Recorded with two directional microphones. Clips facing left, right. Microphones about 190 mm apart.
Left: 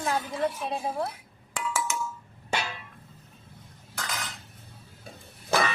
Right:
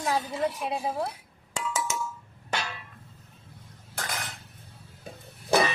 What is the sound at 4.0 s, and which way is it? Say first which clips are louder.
Cutlery: right 1 dB; 55° right (ahead or behind).